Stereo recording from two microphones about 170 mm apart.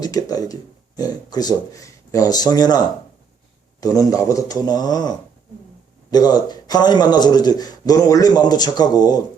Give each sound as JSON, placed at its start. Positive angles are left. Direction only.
{"t": 0.0, "sound": "speech", "side_deg": 20}